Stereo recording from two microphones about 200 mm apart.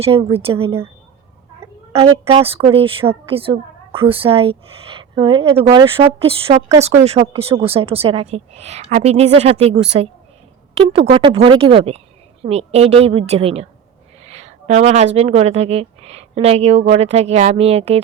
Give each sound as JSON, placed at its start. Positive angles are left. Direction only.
{"t": 0.0, "sound": "speech", "side_deg": -25}
{"t": 2.2, "sound": "speech", "side_deg": -30}